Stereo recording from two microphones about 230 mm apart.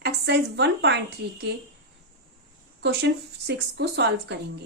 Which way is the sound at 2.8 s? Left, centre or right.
Right.